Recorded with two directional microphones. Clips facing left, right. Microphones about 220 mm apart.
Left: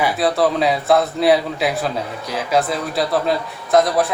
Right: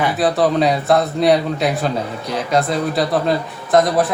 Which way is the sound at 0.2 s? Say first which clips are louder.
Right 3 dB; centre (ahead or behind).